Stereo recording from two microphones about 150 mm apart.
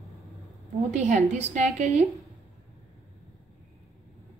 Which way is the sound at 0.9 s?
50° right (ahead or behind).